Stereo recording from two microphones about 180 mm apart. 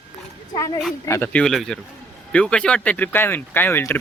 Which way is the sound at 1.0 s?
15° left (ahead or behind).